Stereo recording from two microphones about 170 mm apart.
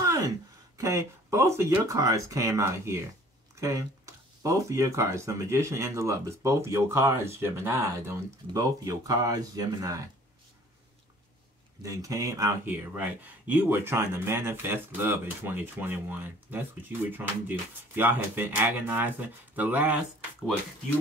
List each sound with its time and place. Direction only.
0.7 s speech: 20° right (ahead or behind)
11.8 s speech: 20° right (ahead or behind)